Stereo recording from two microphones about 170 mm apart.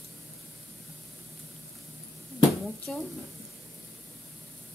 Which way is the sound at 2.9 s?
5° left (ahead or behind).